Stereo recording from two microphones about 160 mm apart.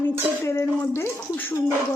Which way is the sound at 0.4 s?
15° left (ahead or behind).